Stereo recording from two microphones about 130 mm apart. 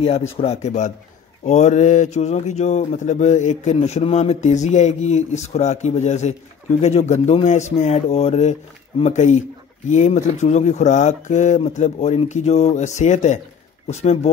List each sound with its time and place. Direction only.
0.0 s speech: 50° left (ahead or behind)
9.0 s speech: 65° left (ahead or behind)